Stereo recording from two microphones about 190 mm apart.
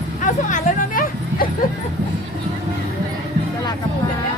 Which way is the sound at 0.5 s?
45° left (ahead or behind).